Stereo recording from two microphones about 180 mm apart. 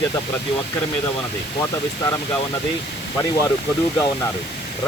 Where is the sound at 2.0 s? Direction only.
15° left (ahead or behind).